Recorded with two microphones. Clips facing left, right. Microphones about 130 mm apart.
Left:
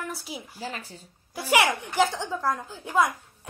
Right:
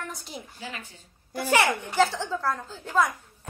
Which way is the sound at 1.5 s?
15° left (ahead or behind).